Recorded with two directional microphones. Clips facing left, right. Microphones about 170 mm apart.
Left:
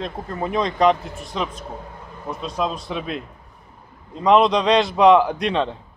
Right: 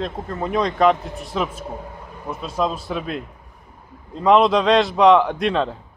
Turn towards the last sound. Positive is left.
turn(degrees=0)  # may be behind; listen again after turning